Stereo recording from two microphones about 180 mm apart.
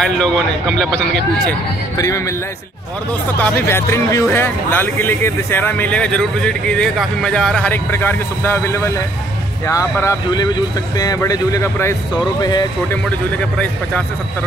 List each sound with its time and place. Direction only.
0.0 s a man's voice: 5° left (ahead or behind)
2.0 s speech: 20° left (ahead or behind)
3.3 s speech: 10° left (ahead or behind)